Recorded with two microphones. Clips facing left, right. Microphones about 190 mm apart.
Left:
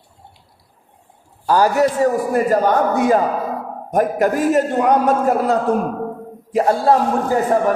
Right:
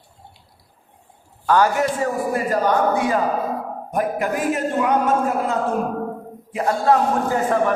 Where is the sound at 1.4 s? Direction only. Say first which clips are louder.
Left 3 dB; 35° left (ahead or behind).